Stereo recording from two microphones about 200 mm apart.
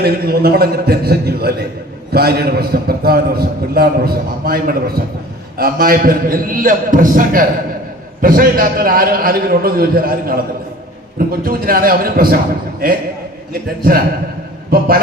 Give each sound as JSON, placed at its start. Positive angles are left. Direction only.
{"t": 0.0, "sound": "a man's voice", "side_deg": -50}
{"t": 13.5, "sound": "a man's voice", "side_deg": -45}